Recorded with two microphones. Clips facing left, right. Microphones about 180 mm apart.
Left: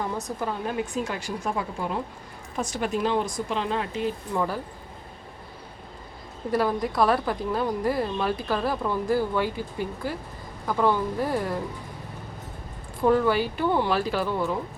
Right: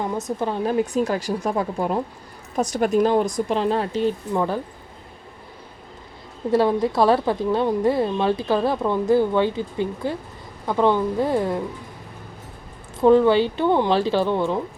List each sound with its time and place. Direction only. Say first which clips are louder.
0.3 s speech: right 5 dB; 25° right (ahead or behind)
1.0 s speech: right 7 dB; 40° right (ahead or behind)
4.4 s speech: right 3 dB; 20° right (ahead or behind)
6.5 s speech: right 6 dB; 25° right (ahead or behind)
13.0 s speech: right 6 dB; 25° right (ahead or behind)